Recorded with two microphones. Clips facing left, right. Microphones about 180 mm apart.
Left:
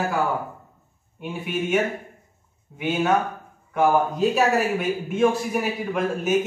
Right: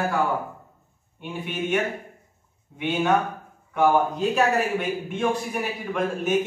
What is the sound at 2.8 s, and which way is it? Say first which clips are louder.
Speech: left 1 dB; 5° left (ahead or behind).